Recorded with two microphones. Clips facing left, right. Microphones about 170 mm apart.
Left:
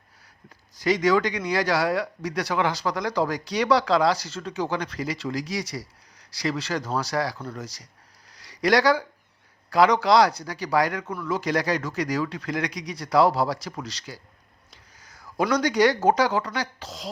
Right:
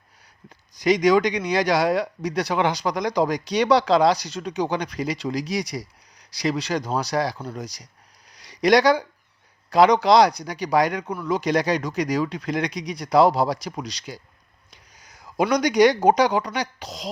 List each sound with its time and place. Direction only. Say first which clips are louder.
0.7 s speech: right 3 dB; 20° right (ahead or behind)
8.3 s a sound: right 4 dB; 20° right (ahead or behind)
9.6 s speech: right 3 dB; 20° right (ahead or behind)